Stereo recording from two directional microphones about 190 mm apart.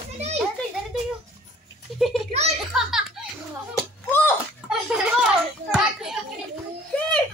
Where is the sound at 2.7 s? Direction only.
Centre (ahead or behind).